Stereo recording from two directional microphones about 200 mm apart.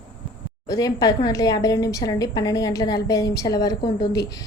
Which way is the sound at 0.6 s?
20° left (ahead or behind).